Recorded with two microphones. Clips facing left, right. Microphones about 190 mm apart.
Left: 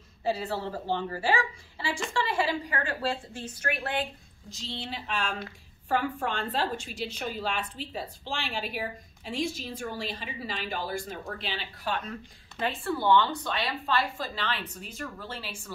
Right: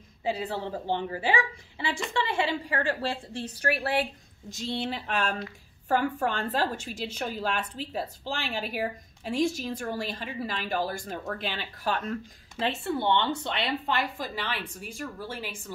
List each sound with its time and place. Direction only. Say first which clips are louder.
0.2 s a woman's voice: even; 15° right (ahead or behind); by 3.9 s 35° right (ahead or behind)
4.6 s a woman's voice: right 6 dB; 50° right (ahead or behind)
7.9 s a woman's voice: right 4 dB; 45° right (ahead or behind)
12.5 s a woman's voice: right 1 dB; 25° right (ahead or behind)